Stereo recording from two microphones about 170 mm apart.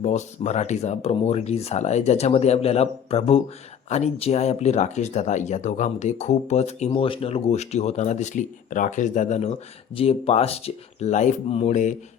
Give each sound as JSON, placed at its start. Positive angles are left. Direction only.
{"t": 0.0, "sound": "speech", "side_deg": 40}